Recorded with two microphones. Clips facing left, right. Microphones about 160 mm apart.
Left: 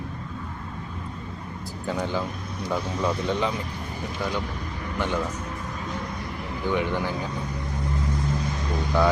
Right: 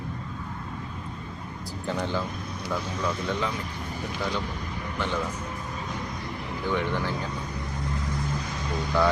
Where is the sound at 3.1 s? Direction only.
20° left (ahead or behind).